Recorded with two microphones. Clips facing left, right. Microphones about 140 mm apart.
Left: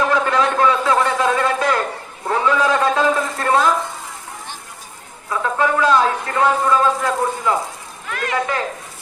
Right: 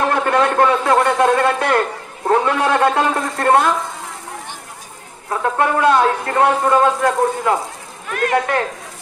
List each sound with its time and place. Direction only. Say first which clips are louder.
0.1 s a man's voice: right 1 dB; 60° right (ahead or behind)
5.5 s a man's voice: right 1 dB; 55° right (ahead or behind)